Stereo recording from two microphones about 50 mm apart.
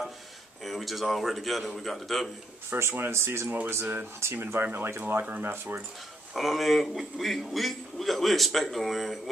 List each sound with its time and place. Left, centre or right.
0.7 s a man's voice: centre
2.7 s speech: right
3.1 s speech: right
3.4 s speech: right
4.4 s speech: right
6.3 s a man's voice: centre